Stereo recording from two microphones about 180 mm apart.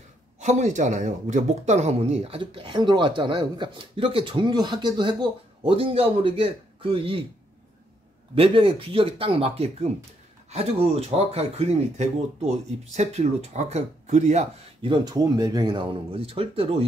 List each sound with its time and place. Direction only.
0.4 s speech: 40° right (ahead or behind)
8.4 s speech: 30° right (ahead or behind)